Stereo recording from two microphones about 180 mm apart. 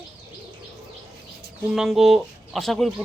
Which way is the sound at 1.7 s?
Centre (ahead or behind).